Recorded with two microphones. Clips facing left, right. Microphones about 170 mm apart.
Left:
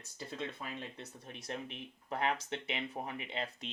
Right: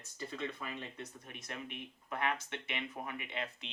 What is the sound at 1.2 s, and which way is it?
Speech, 30° left (ahead or behind).